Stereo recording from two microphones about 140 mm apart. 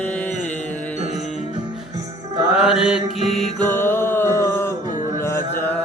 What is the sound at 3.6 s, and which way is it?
Music, 15° left (ahead or behind).